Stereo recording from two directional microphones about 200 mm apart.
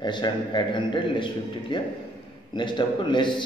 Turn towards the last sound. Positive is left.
turn(degrees=25)  # may be behind; listen again after turning